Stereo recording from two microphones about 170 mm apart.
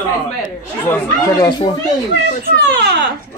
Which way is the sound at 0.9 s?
15° left (ahead or behind).